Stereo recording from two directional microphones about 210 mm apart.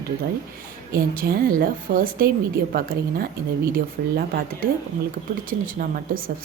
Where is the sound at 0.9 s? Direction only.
45° right (ahead or behind).